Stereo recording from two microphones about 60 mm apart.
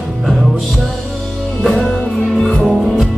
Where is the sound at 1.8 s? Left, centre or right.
Centre.